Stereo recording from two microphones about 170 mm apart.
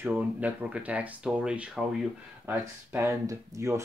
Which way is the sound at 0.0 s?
10° right (ahead or behind).